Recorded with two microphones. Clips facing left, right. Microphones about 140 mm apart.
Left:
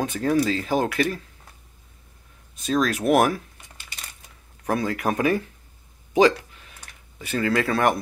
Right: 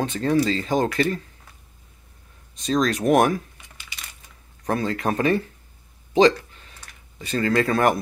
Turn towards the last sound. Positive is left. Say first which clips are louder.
# right 2 dB
turn(degrees=0)  # may be behind; listen again after turning